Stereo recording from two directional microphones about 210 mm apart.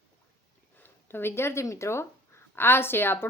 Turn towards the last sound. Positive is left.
turn(degrees=10)  # may be behind; listen again after turning